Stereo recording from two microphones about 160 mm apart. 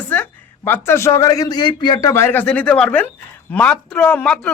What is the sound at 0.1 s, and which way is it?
A man's voice, 15° left (ahead or behind).